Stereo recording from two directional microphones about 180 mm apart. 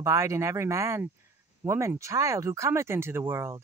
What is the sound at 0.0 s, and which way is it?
Speech, 15° right (ahead or behind).